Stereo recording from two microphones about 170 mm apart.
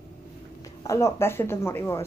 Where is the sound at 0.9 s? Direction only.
15° left (ahead or behind).